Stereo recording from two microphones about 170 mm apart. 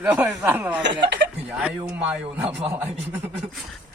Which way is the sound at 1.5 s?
5° right (ahead or behind).